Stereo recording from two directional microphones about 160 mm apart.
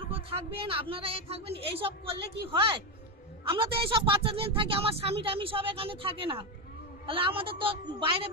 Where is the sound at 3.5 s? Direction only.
35° right (ahead or behind).